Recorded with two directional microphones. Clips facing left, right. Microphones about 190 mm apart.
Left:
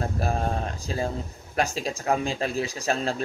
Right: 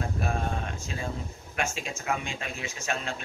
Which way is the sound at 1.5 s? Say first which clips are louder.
Left 6 dB; 35° left (ahead or behind).